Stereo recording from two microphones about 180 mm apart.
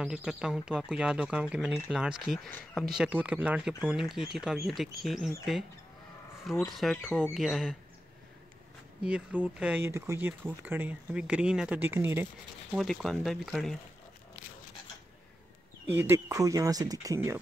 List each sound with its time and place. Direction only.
0.0 s speech: 5° right (ahead or behind)
2.9 s speech: 5° right (ahead or behind)
6.6 s speech: centre (ahead or behind)
9.0 s speech: 5° right (ahead or behind)
12.7 s speech: centre (ahead or behind)
15.9 s speech: 10° right (ahead or behind)